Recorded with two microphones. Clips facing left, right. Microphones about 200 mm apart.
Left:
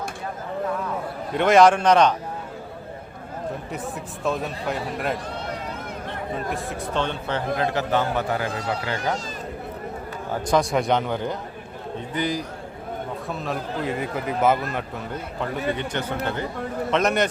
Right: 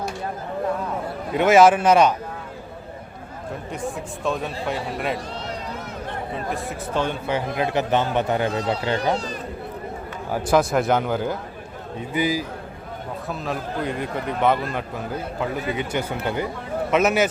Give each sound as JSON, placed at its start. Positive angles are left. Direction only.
{"t": 1.3, "sound": "speech", "side_deg": -5}
{"t": 4.2, "sound": "speech", "side_deg": 0}
{"t": 6.5, "sound": "a man's voice", "side_deg": -5}
{"t": 10.3, "sound": "speech", "side_deg": -5}